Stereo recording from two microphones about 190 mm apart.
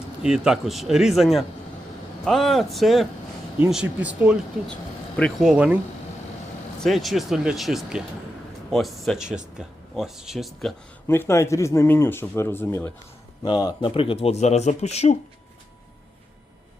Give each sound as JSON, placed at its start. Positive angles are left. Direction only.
{"t": 0.2, "sound": "speech", "side_deg": -5}
{"t": 4.7, "sound": "speech", "side_deg": 5}
{"t": 6.8, "sound": "speech", "side_deg": 0}
{"t": 11.1, "sound": "speech", "side_deg": 15}
{"t": 13.4, "sound": "speech", "side_deg": 25}